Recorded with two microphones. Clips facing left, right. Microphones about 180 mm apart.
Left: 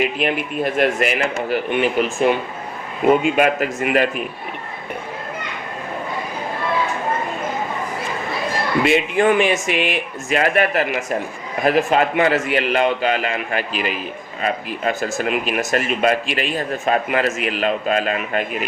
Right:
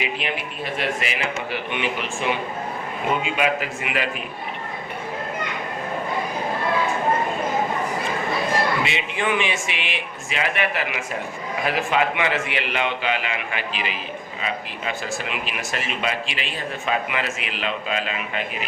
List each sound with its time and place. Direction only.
0.0 s speech: 50° left (ahead or behind)
8.8 s speech: 50° left (ahead or behind)